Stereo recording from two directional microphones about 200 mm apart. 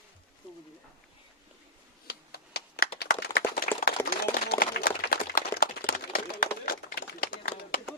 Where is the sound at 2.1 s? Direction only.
55° left (ahead or behind).